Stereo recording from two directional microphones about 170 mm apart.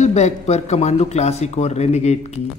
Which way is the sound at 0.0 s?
40° left (ahead or behind).